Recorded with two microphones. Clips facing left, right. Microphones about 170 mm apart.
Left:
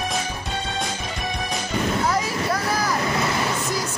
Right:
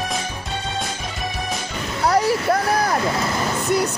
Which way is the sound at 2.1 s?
65° right (ahead or behind).